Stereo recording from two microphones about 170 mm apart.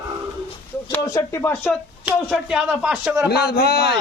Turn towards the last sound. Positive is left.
turn(degrees=70)  # may be behind; listen again after turning